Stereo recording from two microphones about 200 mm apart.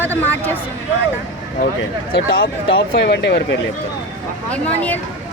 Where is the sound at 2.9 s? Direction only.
55° left (ahead or behind).